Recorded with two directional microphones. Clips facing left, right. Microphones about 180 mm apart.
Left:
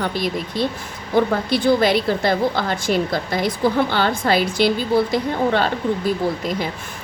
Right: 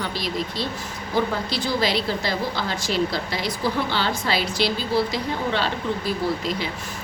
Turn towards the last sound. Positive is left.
turn(degrees=50)  # may be behind; listen again after turning